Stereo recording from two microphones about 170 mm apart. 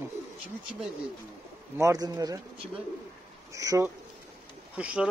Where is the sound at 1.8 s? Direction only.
20° right (ahead or behind).